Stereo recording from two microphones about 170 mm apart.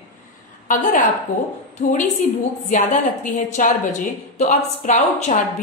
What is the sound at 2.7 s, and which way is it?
A woman's voice, 45° left (ahead or behind).